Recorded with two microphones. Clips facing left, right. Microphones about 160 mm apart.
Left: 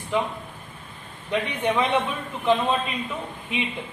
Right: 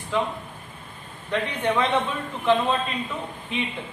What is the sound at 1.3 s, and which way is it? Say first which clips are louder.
Speech: even; 15° left (ahead or behind).